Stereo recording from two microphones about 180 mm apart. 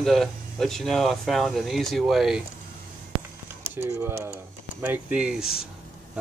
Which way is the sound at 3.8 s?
15° right (ahead or behind).